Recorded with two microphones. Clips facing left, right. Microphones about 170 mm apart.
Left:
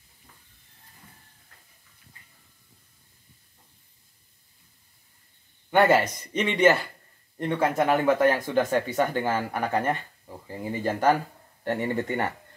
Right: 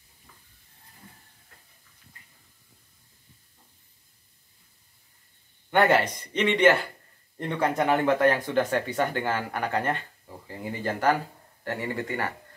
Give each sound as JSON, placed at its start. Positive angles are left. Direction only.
{"t": 5.7, "sound": "speech", "side_deg": 10}